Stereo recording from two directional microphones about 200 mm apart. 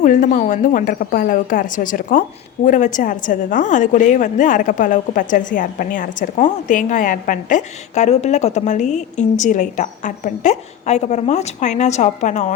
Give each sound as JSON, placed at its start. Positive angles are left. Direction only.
{"t": 0.0, "sound": "a woman's voice", "side_deg": 40}